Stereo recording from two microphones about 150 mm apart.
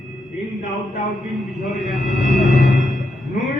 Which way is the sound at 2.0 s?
55° left (ahead or behind).